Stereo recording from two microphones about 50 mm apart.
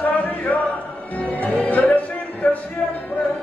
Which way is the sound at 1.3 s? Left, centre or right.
Left.